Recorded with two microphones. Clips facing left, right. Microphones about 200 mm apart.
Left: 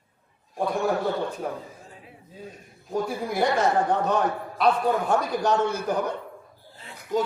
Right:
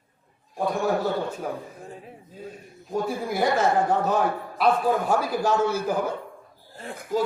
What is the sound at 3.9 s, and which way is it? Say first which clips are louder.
A man's voice: right 1 dB; 5° right (ahead or behind).